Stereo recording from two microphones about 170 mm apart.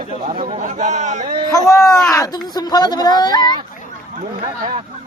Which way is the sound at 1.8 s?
Centre (ahead or behind).